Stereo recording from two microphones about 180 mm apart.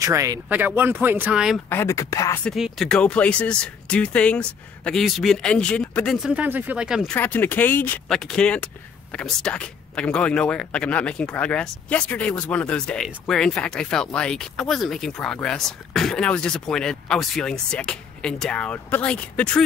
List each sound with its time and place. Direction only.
0.0 s speech: 15° right (ahead or behind)
1.7 s speech: 15° left (ahead or behind)
2.4 s speech: centre (ahead or behind)
6.3 s speech: 10° right (ahead or behind)
7.2 s speech: 10° left (ahead or behind)